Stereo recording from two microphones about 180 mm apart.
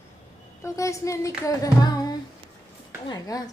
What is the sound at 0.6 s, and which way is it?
Child singing, 15° left (ahead or behind).